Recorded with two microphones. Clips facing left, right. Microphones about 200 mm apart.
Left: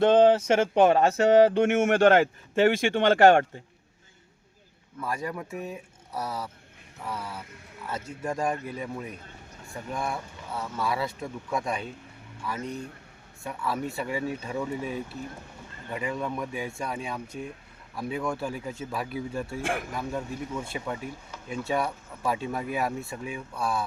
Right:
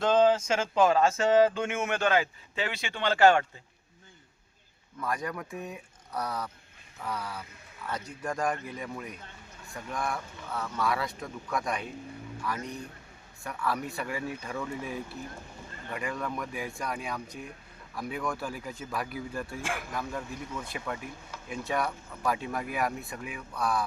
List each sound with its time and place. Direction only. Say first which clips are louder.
0.0 s speech: left 5 dB; 60° left (ahead or behind)
1.8 s speech: left 6 dB; 55° left (ahead or behind)
5.0 s speech: left 1 dB; 25° left (ahead or behind)
6.1 s speech: left 1 dB; 5° left (ahead or behind)
7.9 s speech: left 2 dB; 25° left (ahead or behind)